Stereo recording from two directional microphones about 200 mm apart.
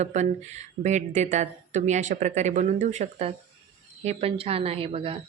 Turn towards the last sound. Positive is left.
turn(degrees=-25)  # may be behind; listen again after turning